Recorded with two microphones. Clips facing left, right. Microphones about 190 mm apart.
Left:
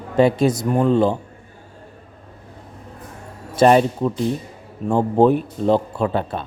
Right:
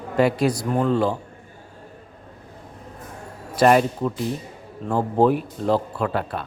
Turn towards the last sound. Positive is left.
turn(degrees=25)  # may be behind; listen again after turning